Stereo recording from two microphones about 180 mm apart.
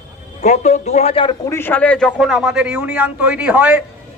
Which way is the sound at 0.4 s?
40° left (ahead or behind).